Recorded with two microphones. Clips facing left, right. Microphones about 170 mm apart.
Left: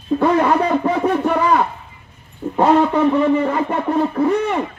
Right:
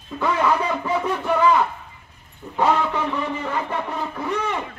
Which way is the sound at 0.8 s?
60° left (ahead or behind).